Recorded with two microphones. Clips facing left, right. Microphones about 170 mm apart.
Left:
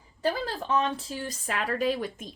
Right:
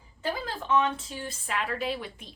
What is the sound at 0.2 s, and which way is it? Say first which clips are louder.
Speech: left 4 dB; 35° left (ahead or behind).